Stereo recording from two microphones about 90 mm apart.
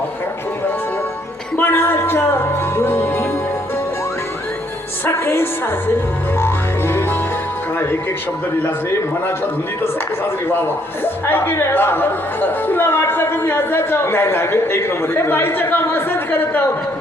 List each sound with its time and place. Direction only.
1.5 s a woman's voice: 25° left (ahead or behind)
5.0 s a woman's voice: 25° left (ahead or behind)
6.3 s music: 25° left (ahead or behind)
11.0 s a woman's voice: 25° left (ahead or behind)